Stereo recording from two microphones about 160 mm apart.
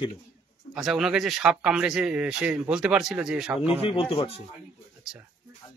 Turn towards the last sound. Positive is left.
turn(degrees=35)  # may be behind; listen again after turning